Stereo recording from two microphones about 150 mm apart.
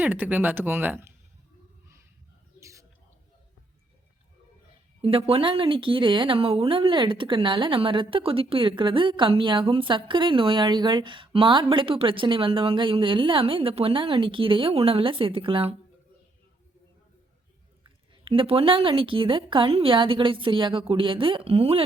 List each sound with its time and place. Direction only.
0.0 s speech: 10° right (ahead or behind)
2.6 s bird: 20° right (ahead or behind)
5.0 s a woman's voice: 40° right (ahead or behind)
17.8 s a woman's voice: 35° right (ahead or behind)